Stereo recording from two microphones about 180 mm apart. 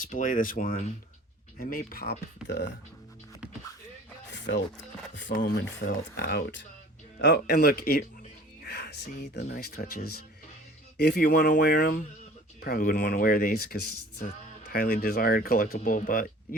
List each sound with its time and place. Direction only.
0.0 s speech: 45° left (ahead or behind); by 2.6 s 65° left (ahead or behind)
4.3 s music: 75° left (ahead or behind)
5.3 s speech: 60° left (ahead or behind)
5.8 s speech: 70° left (ahead or behind)
7.2 s speech: 65° left (ahead or behind)
12.6 s speech: 55° left (ahead or behind)